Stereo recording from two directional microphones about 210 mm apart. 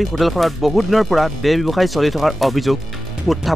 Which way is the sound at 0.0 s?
Centre (ahead or behind).